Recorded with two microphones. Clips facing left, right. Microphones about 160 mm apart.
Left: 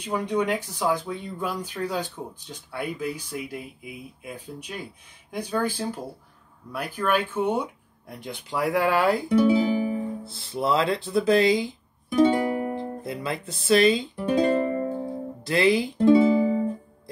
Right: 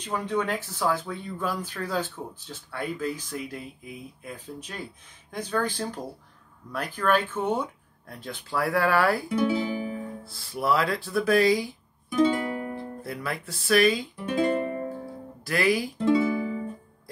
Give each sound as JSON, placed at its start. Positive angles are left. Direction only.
{"t": 0.0, "sound": "speech", "side_deg": 15}
{"t": 12.2, "sound": "music", "side_deg": 25}
{"t": 14.3, "sound": "music", "side_deg": 40}
{"t": 15.4, "sound": "music", "side_deg": 25}